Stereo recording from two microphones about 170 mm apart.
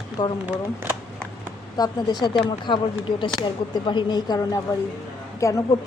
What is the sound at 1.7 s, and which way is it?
A woman's voice, 25° left (ahead or behind).